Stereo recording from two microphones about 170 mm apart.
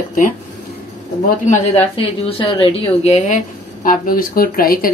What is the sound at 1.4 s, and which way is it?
A woman's voice, 40° left (ahead or behind).